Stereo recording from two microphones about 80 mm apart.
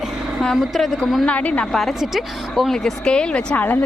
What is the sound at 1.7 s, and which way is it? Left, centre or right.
A woman's voice, centre.